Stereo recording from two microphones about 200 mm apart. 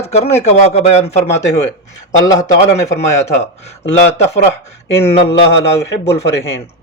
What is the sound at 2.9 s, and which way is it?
Speech, 35° left (ahead or behind).